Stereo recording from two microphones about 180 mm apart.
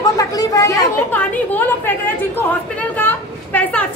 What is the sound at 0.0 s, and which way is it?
Chatter, 20° left (ahead or behind).